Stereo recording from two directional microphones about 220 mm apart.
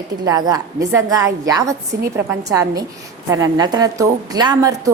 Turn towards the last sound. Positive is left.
turn(degrees=-15)  # may be behind; listen again after turning